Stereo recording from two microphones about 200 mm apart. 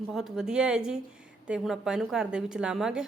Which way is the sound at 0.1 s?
Centre (ahead or behind).